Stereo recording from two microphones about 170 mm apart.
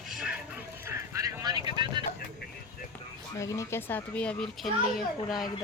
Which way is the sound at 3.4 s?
20° left (ahead or behind).